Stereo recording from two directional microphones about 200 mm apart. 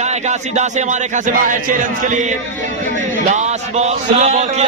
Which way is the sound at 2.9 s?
35° right (ahead or behind).